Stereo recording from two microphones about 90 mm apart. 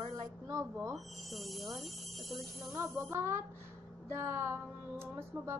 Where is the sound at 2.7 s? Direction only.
30° right (ahead or behind).